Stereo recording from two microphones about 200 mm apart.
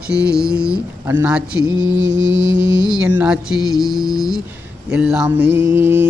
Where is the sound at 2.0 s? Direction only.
65° right (ahead or behind).